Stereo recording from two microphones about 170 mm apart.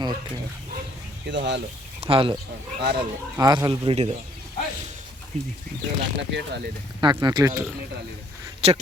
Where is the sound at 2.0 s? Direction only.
30° right (ahead or behind).